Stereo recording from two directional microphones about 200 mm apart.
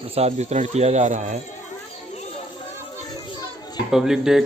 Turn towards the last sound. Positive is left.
turn(degrees=0)  # may be behind; listen again after turning